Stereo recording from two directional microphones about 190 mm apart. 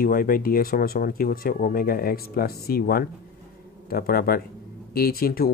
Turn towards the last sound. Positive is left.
turn(degrees=50)  # may be behind; listen again after turning